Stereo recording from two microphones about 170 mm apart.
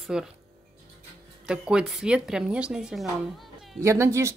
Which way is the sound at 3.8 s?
15° right (ahead or behind).